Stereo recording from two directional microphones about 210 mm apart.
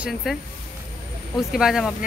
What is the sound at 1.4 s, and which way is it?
Speech, centre (ahead or behind).